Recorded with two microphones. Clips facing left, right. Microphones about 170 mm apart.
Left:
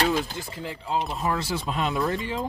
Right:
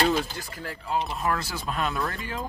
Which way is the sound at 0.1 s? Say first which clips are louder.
Even; 20° left (ahead or behind).